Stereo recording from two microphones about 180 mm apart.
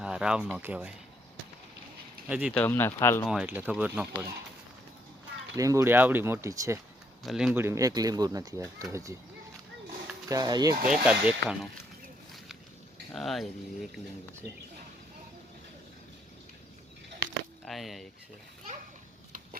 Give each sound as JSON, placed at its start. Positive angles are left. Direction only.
{"t": 0.0, "sound": "speech", "side_deg": -5}
{"t": 2.2, "sound": "speech", "side_deg": -5}
{"t": 2.5, "sound": "speech", "side_deg": 10}
{"t": 3.2, "sound": "speech", "side_deg": -5}
{"t": 5.5, "sound": "speech", "side_deg": -15}
{"t": 7.2, "sound": "speech", "side_deg": 0}
{"t": 10.2, "sound": "speech", "side_deg": -20}
{"t": 10.8, "sound": "speech", "side_deg": -5}
{"t": 13.1, "sound": "speech", "side_deg": 0}
{"t": 17.7, "sound": "speech", "side_deg": 0}